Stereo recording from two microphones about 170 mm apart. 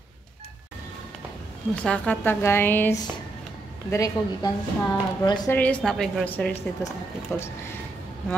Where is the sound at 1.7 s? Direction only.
5° left (ahead or behind); by 5.5 s 25° left (ahead or behind).